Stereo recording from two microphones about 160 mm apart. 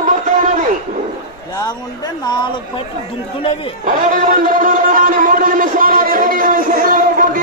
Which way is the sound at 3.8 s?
60° right (ahead or behind).